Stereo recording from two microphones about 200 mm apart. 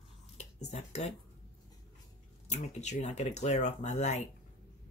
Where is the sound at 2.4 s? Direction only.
35° left (ahead or behind).